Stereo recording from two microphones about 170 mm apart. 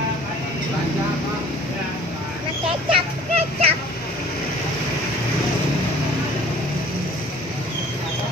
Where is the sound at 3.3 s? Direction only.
35° right (ahead or behind).